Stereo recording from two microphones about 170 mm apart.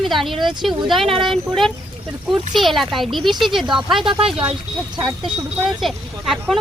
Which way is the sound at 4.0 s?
30° right (ahead or behind).